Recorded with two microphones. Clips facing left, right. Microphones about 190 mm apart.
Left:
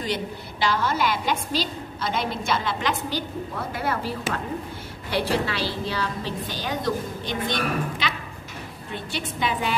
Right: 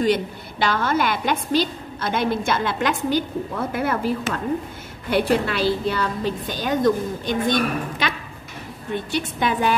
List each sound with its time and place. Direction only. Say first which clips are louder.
0.0 s a woman's voice: right 8 dB; 55° right (ahead or behind)
5.1 s a woman's voice: right 5 dB; 50° right (ahead or behind)
9.1 s a woman's voice: right 3 dB; 50° right (ahead or behind)